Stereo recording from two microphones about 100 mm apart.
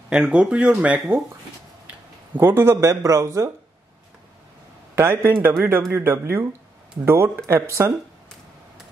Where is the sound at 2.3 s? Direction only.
20° right (ahead or behind).